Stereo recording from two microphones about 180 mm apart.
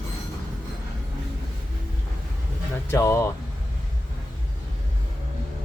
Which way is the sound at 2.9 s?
15° left (ahead or behind).